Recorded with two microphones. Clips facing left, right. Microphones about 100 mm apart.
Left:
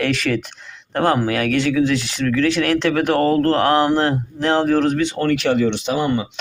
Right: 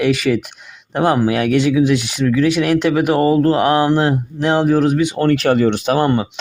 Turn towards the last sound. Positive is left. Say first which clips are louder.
# right 4 dB
turn(degrees=-55)  # may be behind; listen again after turning